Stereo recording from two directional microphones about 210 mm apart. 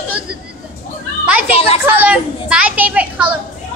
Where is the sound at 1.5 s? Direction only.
30° left (ahead or behind).